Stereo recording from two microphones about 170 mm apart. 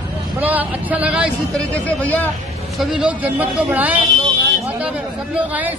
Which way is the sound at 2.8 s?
5° right (ahead or behind).